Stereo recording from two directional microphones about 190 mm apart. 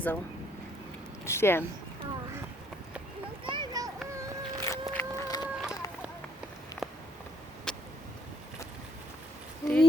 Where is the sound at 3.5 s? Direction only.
20° right (ahead or behind).